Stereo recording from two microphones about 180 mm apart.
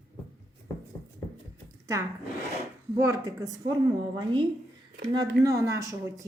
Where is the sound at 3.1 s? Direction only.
20° right (ahead or behind).